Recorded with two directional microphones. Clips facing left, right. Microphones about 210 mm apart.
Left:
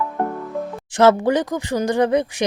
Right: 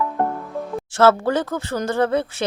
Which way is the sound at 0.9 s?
15° left (ahead or behind).